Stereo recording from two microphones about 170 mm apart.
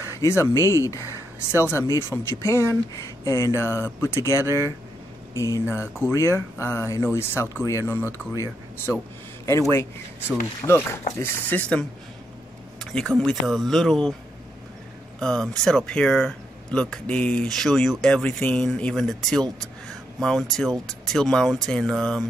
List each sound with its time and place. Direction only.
0.2 s speech: 15° left (ahead or behind)
10.6 s speech: 25° left (ahead or behind)
11.1 s speech: 10° left (ahead or behind)
12.9 s speech: centre (ahead or behind)
15.1 s speech: 5° left (ahead or behind)